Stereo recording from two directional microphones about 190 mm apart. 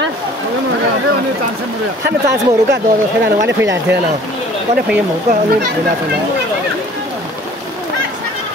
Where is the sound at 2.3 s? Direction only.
60° right (ahead or behind).